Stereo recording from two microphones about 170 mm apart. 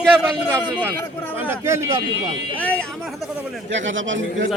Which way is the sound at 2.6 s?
10° left (ahead or behind).